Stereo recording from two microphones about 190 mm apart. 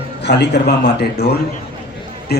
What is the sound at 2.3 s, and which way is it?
Speech, 55° left (ahead or behind).